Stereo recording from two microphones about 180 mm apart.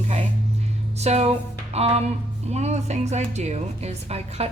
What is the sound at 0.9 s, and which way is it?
A woman's voice, 35° right (ahead or behind).